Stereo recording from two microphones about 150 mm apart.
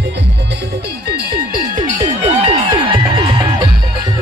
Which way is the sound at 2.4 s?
35° right (ahead or behind).